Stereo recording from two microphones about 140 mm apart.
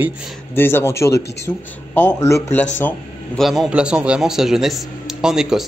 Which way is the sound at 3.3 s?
Centre (ahead or behind).